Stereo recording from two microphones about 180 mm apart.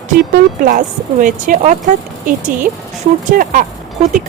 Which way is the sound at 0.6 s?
50° right (ahead or behind).